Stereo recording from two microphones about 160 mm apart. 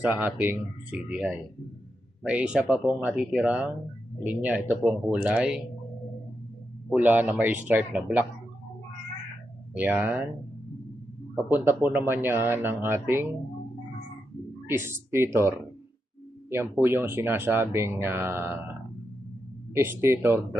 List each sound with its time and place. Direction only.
0.0 s speech: 10° right (ahead or behind)
6.9 s speech: 10° right (ahead or behind)
9.7 s speech: 10° right (ahead or behind)
11.5 s speech: 15° right (ahead or behind)
14.7 s speech: 15° right (ahead or behind)
16.8 s speech: 15° right (ahead or behind)